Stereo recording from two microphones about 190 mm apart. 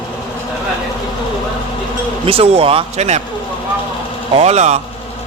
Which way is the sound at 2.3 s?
30° right (ahead or behind).